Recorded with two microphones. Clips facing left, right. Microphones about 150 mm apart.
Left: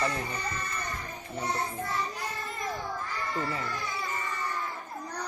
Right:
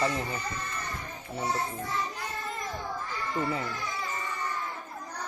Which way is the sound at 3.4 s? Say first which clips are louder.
Right 4 dB; 20° right (ahead or behind).